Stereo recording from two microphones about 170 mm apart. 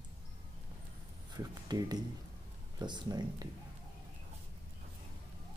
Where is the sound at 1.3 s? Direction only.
25° right (ahead or behind).